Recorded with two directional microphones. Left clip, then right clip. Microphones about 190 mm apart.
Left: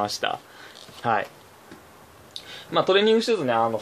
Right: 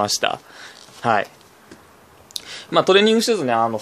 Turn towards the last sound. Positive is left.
turn(degrees=-50)  # may be behind; listen again after turning